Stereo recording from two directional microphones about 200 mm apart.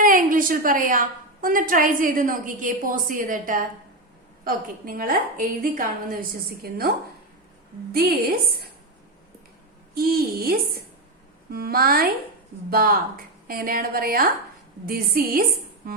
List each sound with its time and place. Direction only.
0.0 s a woman's voice: 45° right (ahead or behind)
9.9 s a woman's voice: 50° right (ahead or behind)